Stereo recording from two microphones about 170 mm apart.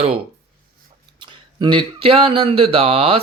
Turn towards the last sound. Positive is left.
turn(degrees=-35)  # may be behind; listen again after turning